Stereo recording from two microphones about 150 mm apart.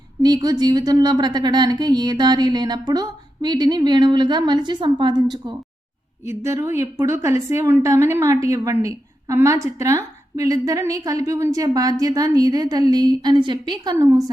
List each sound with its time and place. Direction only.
0.2 s a woman's voice: 30° right (ahead or behind)
6.2 s a woman's voice: 20° right (ahead or behind)